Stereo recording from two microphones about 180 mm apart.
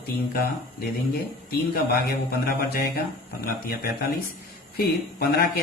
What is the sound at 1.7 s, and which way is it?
Speech, 55° left (ahead or behind).